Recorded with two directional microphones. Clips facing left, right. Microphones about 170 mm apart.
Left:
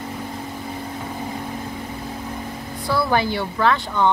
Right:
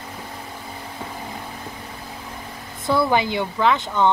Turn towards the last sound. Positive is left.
turn(degrees=-15)  # may be behind; listen again after turning